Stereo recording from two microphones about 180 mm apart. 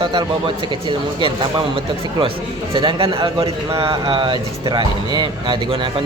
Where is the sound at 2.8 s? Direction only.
30° right (ahead or behind).